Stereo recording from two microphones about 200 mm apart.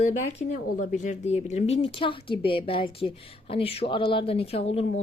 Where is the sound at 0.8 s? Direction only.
35° left (ahead or behind).